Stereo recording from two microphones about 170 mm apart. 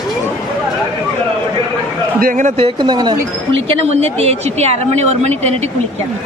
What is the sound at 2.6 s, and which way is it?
A woman's voice, 25° right (ahead or behind).